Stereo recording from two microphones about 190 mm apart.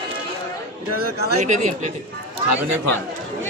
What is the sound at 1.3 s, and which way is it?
Speech, 40° right (ahead or behind).